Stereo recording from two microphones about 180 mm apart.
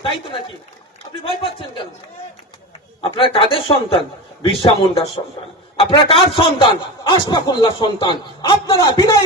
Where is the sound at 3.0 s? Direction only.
30° left (ahead or behind).